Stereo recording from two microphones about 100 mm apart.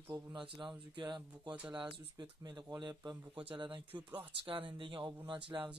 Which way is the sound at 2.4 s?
40° right (ahead or behind).